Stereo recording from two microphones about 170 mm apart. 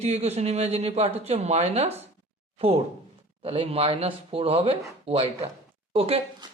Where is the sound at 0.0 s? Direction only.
40° right (ahead or behind).